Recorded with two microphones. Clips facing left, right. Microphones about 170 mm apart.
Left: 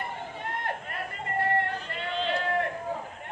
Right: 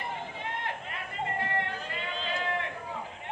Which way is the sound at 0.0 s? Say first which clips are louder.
Left 1 dB; 45° left (ahead or behind).